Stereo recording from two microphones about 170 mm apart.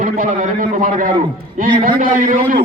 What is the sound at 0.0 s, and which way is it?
A man's voice, 50° right (ahead or behind).